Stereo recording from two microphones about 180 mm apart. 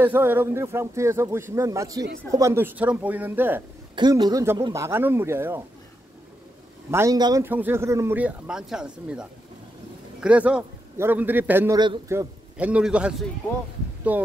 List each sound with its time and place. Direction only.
0.0 s speech: 10° right (ahead or behind)
3.9 s speech: 25° right (ahead or behind)
6.9 s a man's voice: 15° right (ahead or behind)